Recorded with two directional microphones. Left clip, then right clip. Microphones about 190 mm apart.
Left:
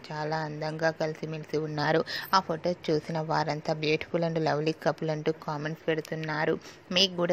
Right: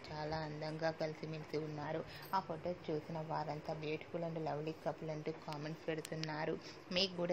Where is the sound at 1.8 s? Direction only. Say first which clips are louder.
Left 17 dB; 50° left (ahead or behind).